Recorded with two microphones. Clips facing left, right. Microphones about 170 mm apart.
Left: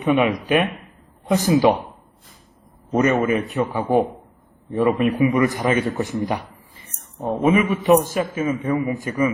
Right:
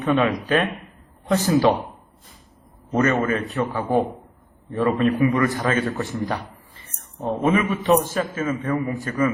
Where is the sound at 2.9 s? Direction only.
15° left (ahead or behind).